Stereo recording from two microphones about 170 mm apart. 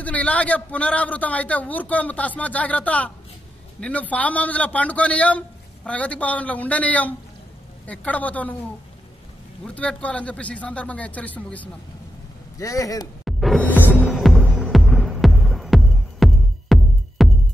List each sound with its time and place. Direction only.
0.0 s a man's voice: 10° left (ahead or behind)
9.8 s a man's voice: 5° left (ahead or behind)
12.5 s speech: 20° left (ahead or behind)
13.2 s music: centre (ahead or behind)
13.7 s music: 10° left (ahead or behind)
13.9 s music: centre (ahead or behind)